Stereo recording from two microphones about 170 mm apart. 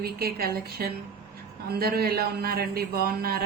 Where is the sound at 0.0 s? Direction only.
65° right (ahead or behind).